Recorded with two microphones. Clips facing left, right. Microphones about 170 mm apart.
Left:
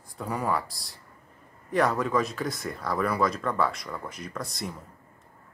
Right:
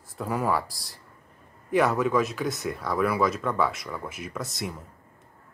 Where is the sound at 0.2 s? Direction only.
Centre (ahead or behind).